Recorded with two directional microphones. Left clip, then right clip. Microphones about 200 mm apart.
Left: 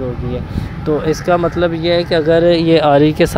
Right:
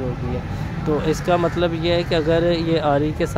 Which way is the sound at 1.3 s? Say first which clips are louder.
Left 5 dB; 15° left (ahead or behind).